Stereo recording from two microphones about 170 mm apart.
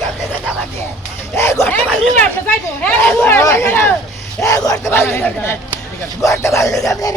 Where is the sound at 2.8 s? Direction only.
10° left (ahead or behind).